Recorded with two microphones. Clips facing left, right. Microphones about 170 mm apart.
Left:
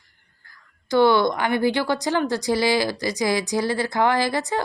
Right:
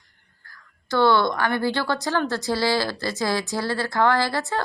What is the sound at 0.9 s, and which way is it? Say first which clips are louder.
A woman's voice: left 2 dB; 15° left (ahead or behind).